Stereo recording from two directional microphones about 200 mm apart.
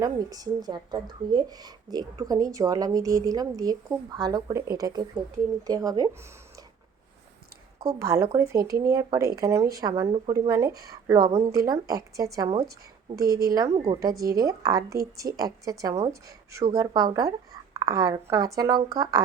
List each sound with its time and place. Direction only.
0.0 s speech: 20° right (ahead or behind)
7.9 s speech: 15° right (ahead or behind)
11.3 s speech: 30° right (ahead or behind)
11.5 s speech: 20° right (ahead or behind)
13.7 s speech: 30° right (ahead or behind)
14.0 s speech: 15° right (ahead or behind)